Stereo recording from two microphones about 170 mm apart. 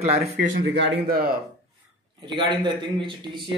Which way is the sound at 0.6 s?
90° right.